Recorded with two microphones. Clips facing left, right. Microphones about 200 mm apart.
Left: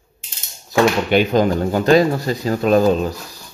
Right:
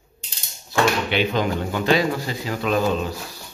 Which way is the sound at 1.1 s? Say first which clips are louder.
Left 7 dB; 45° left (ahead or behind).